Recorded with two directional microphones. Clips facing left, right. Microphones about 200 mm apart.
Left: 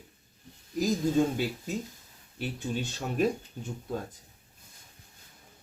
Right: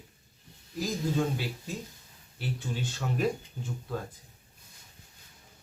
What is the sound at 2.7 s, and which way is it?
Speech, 15° left (ahead or behind).